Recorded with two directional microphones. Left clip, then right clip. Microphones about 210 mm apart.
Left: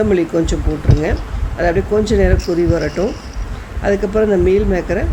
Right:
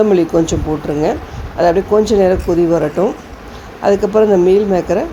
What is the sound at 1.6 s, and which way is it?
Speech, centre (ahead or behind).